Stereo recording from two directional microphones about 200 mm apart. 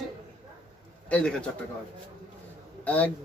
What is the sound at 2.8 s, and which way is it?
Speech, 10° left (ahead or behind).